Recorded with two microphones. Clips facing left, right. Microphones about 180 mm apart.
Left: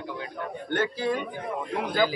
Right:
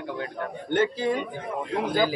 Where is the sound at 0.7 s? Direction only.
20° right (ahead or behind).